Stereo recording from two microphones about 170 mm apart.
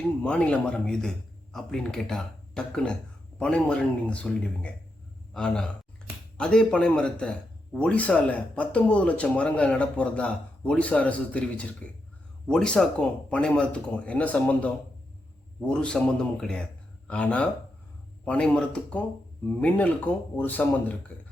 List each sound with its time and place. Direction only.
0.2 s a man's voice: 5° left (ahead or behind)